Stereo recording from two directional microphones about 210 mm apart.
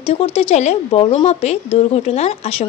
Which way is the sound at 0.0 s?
25° left (ahead or behind).